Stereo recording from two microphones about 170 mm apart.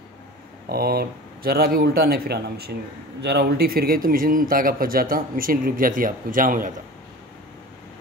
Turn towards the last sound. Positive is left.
turn(degrees=-55)  # may be behind; listen again after turning